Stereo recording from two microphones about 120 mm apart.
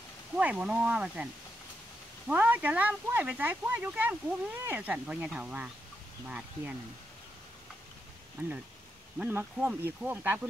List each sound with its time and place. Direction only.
0.4 s speech: 10° right (ahead or behind)
8.4 s speech: 25° right (ahead or behind)
9.2 s speech: 15° right (ahead or behind)